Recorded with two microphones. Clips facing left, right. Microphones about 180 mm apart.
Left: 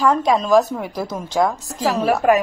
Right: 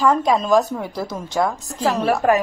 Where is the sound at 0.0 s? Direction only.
Centre (ahead or behind).